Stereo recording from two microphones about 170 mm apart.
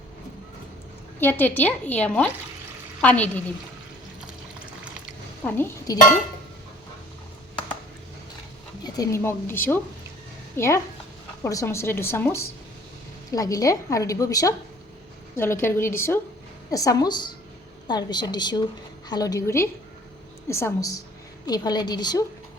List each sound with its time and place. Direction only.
1.2 s a woman's voice: 10° left (ahead or behind)
5.5 s a woman's voice: 15° left (ahead or behind)
8.8 s a woman's voice: 20° left (ahead or behind)